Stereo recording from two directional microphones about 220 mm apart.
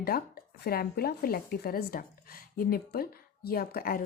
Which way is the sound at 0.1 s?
45° left (ahead or behind).